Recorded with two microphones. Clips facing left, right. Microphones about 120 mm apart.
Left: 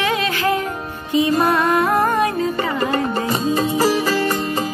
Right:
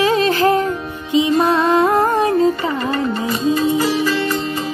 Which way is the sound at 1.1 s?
20° right (ahead or behind).